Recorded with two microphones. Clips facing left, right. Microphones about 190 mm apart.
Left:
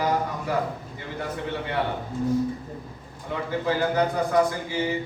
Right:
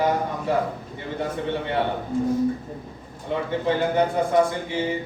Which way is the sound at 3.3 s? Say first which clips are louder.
Right 3 dB; 25° right (ahead or behind).